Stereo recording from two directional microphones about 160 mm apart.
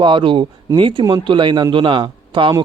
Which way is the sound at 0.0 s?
30° right (ahead or behind).